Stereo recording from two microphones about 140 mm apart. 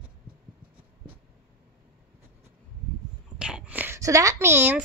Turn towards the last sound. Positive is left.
turn(degrees=-15)  # may be behind; listen again after turning